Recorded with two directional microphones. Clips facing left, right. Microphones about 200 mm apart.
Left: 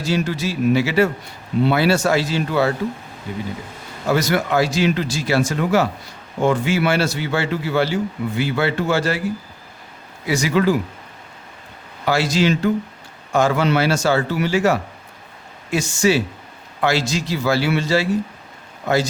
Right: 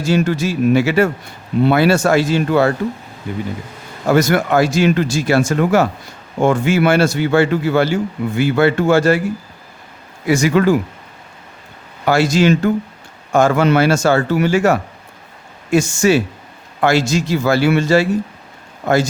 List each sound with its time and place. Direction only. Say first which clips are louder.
0.0 s speech: right 5 dB; 50° right (ahead or behind)
4.1 s speech: right 5 dB; 50° right (ahead or behind)
10.2 s speech: right 4 dB; 50° right (ahead or behind)
12.0 s speech: right 5 dB; 50° right (ahead or behind)